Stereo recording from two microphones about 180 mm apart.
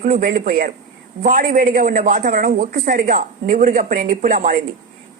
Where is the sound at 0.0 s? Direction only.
45° right (ahead or behind).